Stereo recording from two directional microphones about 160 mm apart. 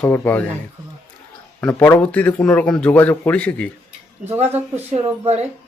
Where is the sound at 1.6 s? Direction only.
10° left (ahead or behind).